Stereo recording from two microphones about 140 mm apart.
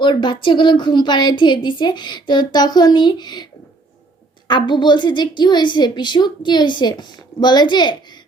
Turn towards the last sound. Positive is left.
turn(degrees=30)  # may be behind; listen again after turning